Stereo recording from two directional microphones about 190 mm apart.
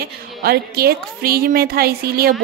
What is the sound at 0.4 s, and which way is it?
Speech, 55° right (ahead or behind).